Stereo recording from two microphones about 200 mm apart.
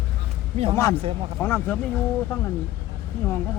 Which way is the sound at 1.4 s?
10° left (ahead or behind).